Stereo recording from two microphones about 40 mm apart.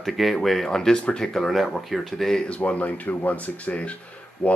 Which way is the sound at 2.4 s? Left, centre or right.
Left.